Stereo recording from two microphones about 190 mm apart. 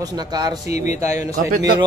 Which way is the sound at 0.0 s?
20° right (ahead or behind).